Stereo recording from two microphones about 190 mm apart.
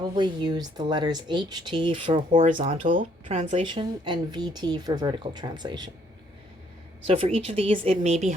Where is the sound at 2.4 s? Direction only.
40° right (ahead or behind).